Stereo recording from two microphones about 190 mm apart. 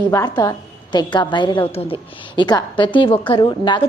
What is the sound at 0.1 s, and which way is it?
A woman's voice, 20° left (ahead or behind).